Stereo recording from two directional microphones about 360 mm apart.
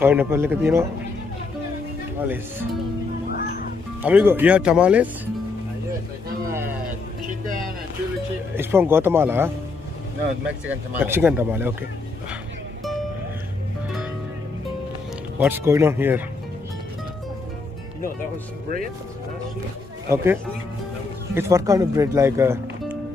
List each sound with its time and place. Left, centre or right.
0.0 s speech: centre
3.3 s music: left
4.0 s speech: centre
7.2 s vehicle: right
8.5 s speech: centre
15.3 s speech: centre
21.4 s speech: centre